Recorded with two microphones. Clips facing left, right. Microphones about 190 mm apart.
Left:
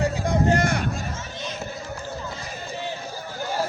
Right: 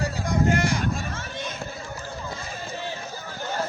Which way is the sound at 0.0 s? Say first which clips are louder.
Left 2 dB; 35° left (ahead or behind).